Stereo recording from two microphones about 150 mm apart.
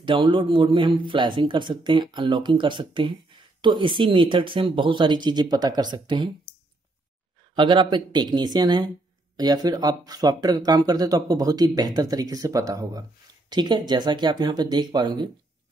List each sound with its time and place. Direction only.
0.0 s a man's voice: 30° right (ahead or behind)
7.5 s speech: 30° right (ahead or behind)